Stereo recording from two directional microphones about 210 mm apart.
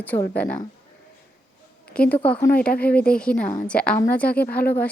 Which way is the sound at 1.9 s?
5° left (ahead or behind).